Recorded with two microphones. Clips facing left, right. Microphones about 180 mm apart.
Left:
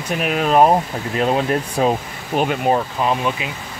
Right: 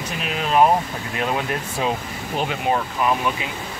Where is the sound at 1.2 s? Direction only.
30° left (ahead or behind).